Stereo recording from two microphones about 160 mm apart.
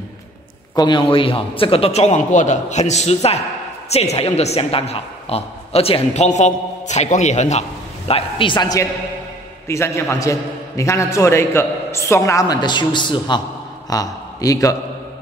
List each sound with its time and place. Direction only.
0.7 s a man's voice: 30° left (ahead or behind); by 7.6 s 45° left (ahead or behind)
8.1 s a man's voice: 30° left (ahead or behind)